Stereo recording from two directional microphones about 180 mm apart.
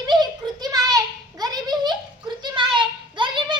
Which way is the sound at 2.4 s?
25° right (ahead or behind).